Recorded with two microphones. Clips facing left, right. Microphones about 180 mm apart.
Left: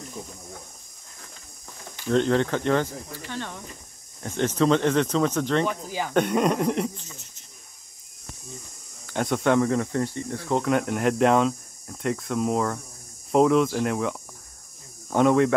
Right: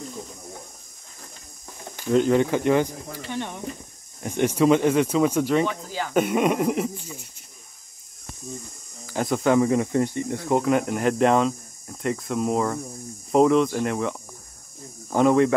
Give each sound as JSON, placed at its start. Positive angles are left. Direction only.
{"t": 2.0, "sound": "speech", "side_deg": -5}
{"t": 5.7, "sound": "speech", "side_deg": 15}
{"t": 6.1, "sound": "speech", "side_deg": -5}
{"t": 9.0, "sound": "speech", "side_deg": 0}
{"t": 9.7, "sound": "speech", "side_deg": -15}
{"t": 10.6, "sound": "speech", "side_deg": 0}